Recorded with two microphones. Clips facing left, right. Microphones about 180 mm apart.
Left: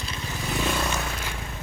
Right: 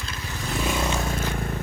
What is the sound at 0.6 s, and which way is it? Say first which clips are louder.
Vehicle: right 1 dB; 5° right (ahead or behind).